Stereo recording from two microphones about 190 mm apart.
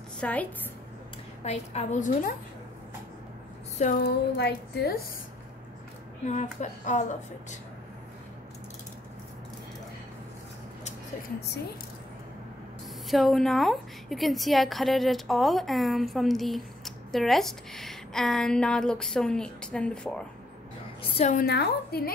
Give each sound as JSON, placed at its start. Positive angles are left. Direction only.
{"t": 0.2, "sound": "a woman's voice", "side_deg": 5}
{"t": 1.4, "sound": "a woman's voice", "side_deg": 35}
{"t": 3.7, "sound": "a woman's voice", "side_deg": 40}
{"t": 4.0, "sound": "a woman's voice", "side_deg": 60}
{"t": 6.2, "sound": "a woman's voice", "side_deg": 40}
{"t": 13.1, "sound": "a woman's voice", "side_deg": 0}
{"t": 21.0, "sound": "a woman's voice", "side_deg": 30}
{"t": 21.5, "sound": "a woman's voice", "side_deg": 55}